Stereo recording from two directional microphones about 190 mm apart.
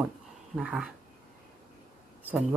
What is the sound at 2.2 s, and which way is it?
Speech, 10° right (ahead or behind).